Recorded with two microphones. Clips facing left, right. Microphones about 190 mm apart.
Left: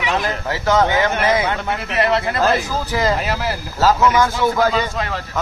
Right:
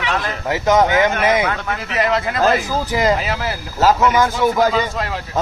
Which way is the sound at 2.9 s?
15° right (ahead or behind).